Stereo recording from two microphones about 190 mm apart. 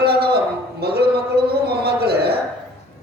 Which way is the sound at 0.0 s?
55° right (ahead or behind).